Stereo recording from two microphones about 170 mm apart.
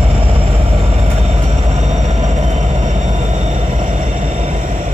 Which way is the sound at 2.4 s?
45° right (ahead or behind).